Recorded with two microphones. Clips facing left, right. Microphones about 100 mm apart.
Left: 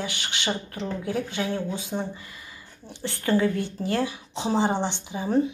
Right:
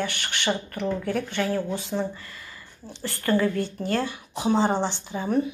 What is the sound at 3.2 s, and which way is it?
Speech, 65° right (ahead or behind).